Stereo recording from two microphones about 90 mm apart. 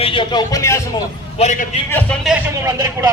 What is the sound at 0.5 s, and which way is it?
Speech, 35° left (ahead or behind).